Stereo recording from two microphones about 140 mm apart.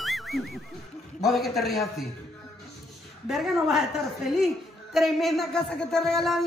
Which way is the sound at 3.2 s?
Centre (ahead or behind).